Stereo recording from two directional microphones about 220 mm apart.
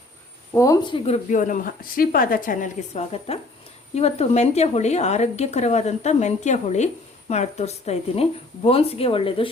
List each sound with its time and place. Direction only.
0.5 s a woman's voice: 15° left (ahead or behind)